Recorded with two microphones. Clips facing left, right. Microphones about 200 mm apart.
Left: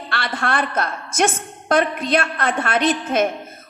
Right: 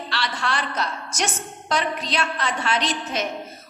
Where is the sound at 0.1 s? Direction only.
55° left (ahead or behind).